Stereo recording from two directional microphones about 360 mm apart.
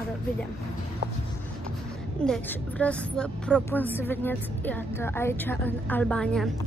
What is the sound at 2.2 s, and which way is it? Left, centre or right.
A woman's voice, centre.